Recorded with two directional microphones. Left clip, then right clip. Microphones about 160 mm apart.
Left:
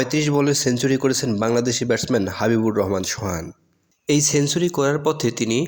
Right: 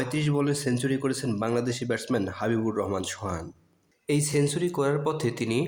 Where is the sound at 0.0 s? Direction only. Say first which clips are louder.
Left 8 dB; 40° left (ahead or behind).